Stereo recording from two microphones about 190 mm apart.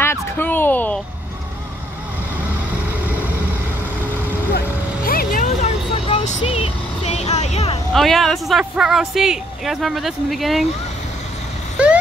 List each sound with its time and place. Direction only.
0.0 s a sound: 10° left (ahead or behind)
4.6 s vehicle: 50° left (ahead or behind); by 7.8 s 30° left (ahead or behind)
7.9 s speech: centre (ahead or behind)